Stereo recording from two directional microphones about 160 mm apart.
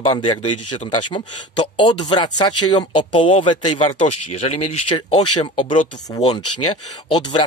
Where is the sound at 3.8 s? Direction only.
45° left (ahead or behind).